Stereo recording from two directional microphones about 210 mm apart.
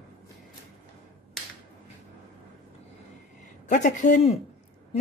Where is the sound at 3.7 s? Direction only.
35° left (ahead or behind).